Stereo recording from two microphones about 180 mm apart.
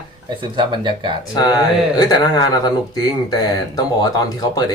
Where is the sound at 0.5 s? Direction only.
25° right (ahead or behind).